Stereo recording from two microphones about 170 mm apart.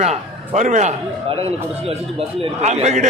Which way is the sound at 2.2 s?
40° right (ahead or behind).